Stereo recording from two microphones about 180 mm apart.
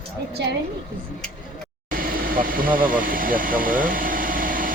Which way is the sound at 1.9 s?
50° right (ahead or behind).